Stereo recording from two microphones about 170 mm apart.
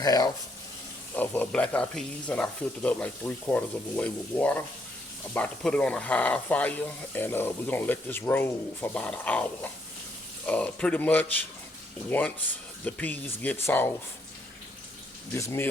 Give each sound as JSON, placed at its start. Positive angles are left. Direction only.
{"t": 0.0, "sound": "speech", "side_deg": 20}
{"t": 1.1, "sound": "speech", "side_deg": 10}
{"t": 15.4, "sound": "speech", "side_deg": 15}